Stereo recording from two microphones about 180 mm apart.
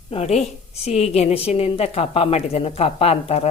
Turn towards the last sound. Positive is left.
turn(degrees=35)  # may be behind; listen again after turning